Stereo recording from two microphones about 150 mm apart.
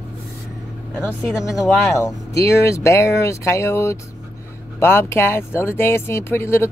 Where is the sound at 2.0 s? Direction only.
20° left (ahead or behind).